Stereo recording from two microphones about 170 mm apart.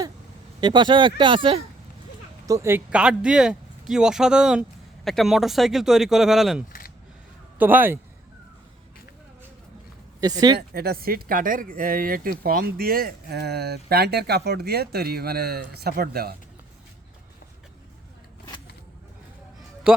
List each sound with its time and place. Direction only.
0.6 s speech: 25° right (ahead or behind)
2.5 s speech: 15° right (ahead or behind)
10.6 s speech: 65° right (ahead or behind)